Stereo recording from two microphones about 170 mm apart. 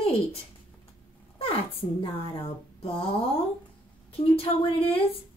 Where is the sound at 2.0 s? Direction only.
35° left (ahead or behind).